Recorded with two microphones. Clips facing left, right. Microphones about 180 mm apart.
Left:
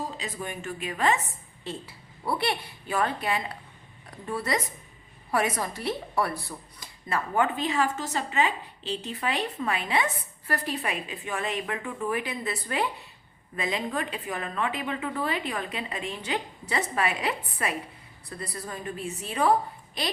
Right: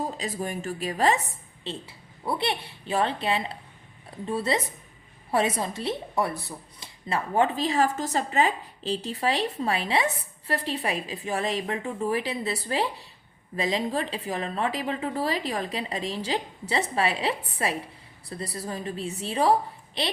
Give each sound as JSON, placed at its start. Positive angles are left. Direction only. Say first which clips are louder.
{"t": 0.2, "sound": "a woman's voice", "louder": "right 4 dB", "side_deg": -40}
{"t": 1.6, "sound": "a woman's voice", "louder": "right 1 dB", "side_deg": -25}